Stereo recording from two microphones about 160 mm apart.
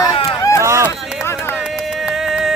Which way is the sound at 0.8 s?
15° left (ahead or behind).